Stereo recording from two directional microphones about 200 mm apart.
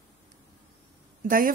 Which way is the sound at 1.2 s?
45° right (ahead or behind).